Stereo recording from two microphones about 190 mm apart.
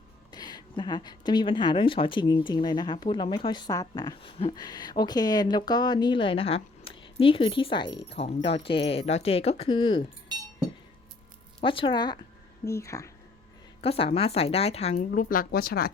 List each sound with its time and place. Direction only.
0.3 s speech: 20° left (ahead or behind)
11.6 s speech: 25° left (ahead or behind)
13.8 s a woman's voice: 30° left (ahead or behind)
15.1 s speech: 45° left (ahead or behind)